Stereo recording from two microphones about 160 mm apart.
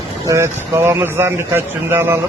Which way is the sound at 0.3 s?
15° right (ahead or behind).